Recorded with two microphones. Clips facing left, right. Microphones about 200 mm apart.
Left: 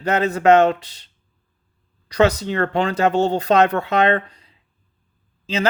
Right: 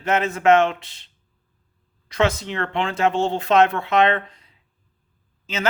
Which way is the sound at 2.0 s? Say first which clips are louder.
Left 4 dB; 40° left (ahead or behind).